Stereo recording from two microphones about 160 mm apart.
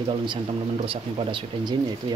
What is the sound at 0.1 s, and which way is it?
Speech, 30° right (ahead or behind).